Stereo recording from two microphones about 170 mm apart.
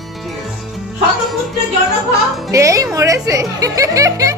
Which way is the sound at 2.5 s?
20° right (ahead or behind).